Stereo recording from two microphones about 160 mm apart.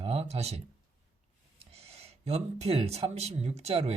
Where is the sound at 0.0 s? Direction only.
40° right (ahead or behind).